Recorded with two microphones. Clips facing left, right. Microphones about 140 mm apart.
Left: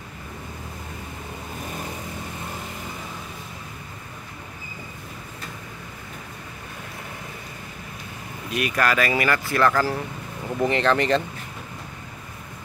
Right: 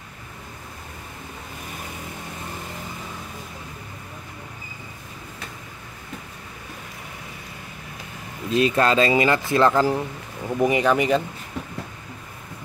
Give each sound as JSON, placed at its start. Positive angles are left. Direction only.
{"t": 8.5, "sound": "speech", "side_deg": -25}